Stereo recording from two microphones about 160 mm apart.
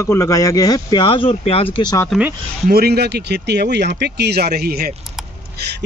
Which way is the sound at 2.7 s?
80° right.